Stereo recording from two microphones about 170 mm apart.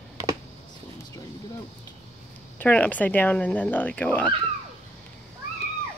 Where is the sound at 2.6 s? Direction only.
10° left (ahead or behind).